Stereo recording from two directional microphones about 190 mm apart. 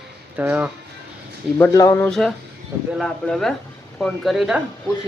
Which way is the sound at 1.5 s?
20° left (ahead or behind).